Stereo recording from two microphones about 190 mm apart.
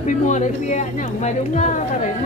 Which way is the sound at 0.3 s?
40° left (ahead or behind).